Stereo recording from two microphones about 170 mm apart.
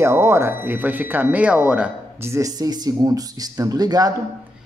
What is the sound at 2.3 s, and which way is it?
Speech, 20° right (ahead or behind).